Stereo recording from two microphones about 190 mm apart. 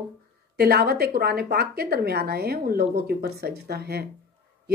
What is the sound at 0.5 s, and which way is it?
A woman's voice, 55° right (ahead or behind).